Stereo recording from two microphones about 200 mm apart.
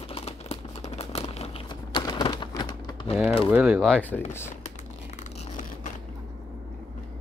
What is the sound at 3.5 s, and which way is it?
Speech, 5° right (ahead or behind).